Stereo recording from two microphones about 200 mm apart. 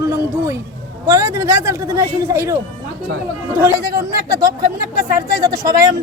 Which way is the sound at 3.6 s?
20° right (ahead or behind).